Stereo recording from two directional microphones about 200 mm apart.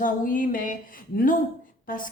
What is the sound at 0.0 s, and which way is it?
A woman's voice, 40° left (ahead or behind).